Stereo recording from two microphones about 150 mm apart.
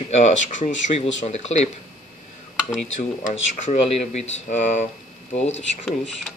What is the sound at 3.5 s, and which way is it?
Speech, 45° left (ahead or behind).